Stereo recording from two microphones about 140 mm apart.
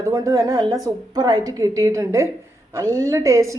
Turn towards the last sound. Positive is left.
turn(degrees=-20)  # may be behind; listen again after turning